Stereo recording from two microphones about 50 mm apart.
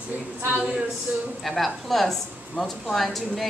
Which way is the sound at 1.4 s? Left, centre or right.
Centre.